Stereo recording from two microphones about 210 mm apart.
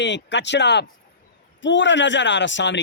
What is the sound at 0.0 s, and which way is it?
Speech, 55° left (ahead or behind).